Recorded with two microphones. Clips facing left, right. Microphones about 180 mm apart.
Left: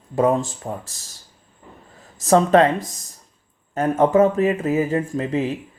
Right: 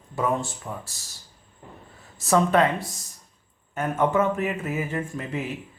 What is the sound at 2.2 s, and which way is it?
Speech, 40° left (ahead or behind).